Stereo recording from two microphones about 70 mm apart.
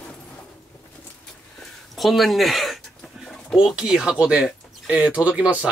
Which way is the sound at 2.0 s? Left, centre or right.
Centre.